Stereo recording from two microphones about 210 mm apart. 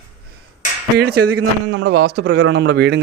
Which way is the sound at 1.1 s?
90° right.